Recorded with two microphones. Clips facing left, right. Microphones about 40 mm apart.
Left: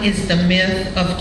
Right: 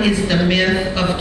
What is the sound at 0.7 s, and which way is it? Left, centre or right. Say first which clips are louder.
Speech: right 3 dB; centre.